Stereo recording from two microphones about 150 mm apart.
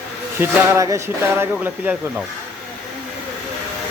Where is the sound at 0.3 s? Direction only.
20° right (ahead or behind).